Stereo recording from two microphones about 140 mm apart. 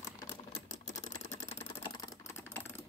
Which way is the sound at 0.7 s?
60° left (ahead or behind).